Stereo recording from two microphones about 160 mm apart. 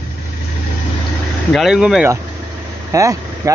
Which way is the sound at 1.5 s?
Centre (ahead or behind).